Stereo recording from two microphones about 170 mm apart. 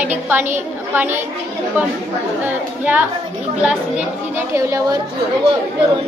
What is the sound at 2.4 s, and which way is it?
Speech, 10° right (ahead or behind).